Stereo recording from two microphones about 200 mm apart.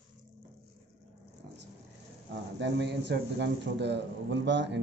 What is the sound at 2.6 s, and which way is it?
Speech, 60° right (ahead or behind).